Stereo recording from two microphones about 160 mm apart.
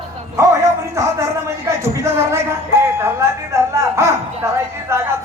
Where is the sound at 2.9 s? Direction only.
15° right (ahead or behind).